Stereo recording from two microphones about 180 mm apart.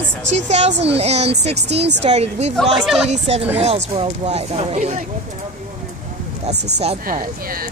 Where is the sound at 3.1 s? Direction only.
35° right (ahead or behind).